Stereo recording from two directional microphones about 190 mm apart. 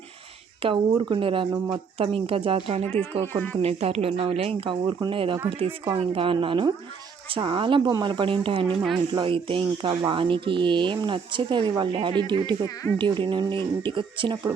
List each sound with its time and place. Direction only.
0.6 s speech: 25° right (ahead or behind)